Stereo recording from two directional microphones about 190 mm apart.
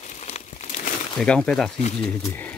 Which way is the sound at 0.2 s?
35° left (ahead or behind).